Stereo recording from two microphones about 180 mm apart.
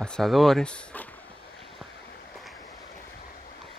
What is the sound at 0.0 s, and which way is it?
Speech, 5° left (ahead or behind).